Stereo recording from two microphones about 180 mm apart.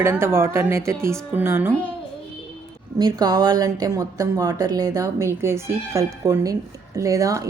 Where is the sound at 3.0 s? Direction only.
20° right (ahead or behind).